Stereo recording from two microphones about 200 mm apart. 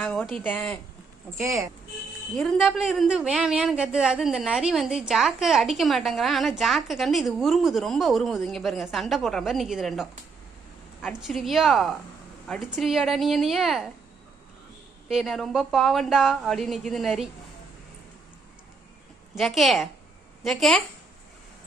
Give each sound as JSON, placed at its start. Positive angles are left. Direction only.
{"t": 0.0, "sound": "speech", "side_deg": 5}
{"t": 1.4, "sound": "speech", "side_deg": -15}
{"t": 2.3, "sound": "a woman's voice", "side_deg": 0}
{"t": 15.0, "sound": "a woman's voice", "side_deg": 0}
{"t": 19.3, "sound": "a woman's voice", "side_deg": 0}